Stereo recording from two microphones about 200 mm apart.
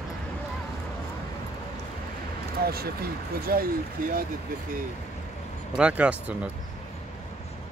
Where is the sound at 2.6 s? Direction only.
50° right (ahead or behind).